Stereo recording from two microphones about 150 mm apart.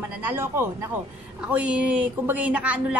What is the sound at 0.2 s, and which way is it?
A woman's voice, 15° right (ahead or behind).